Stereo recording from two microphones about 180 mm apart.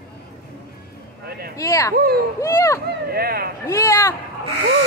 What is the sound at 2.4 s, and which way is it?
Speech, 15° left (ahead or behind).